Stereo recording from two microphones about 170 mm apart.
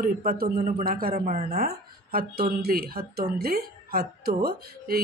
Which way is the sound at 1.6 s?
60° right (ahead or behind).